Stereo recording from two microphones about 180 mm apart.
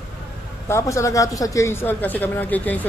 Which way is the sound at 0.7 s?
15° left (ahead or behind).